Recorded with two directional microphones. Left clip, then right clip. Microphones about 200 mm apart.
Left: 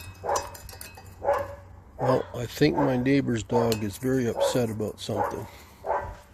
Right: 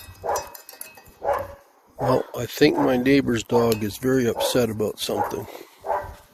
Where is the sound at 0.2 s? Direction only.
45° right (ahead or behind).